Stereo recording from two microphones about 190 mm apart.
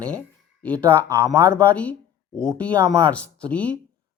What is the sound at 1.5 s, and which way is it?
Speech, 5° left (ahead or behind).